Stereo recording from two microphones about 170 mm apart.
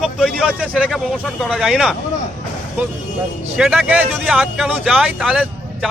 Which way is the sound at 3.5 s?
5° right (ahead or behind).